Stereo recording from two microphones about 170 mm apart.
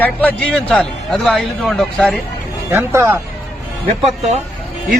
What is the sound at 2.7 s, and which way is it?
Speech, 15° right (ahead or behind).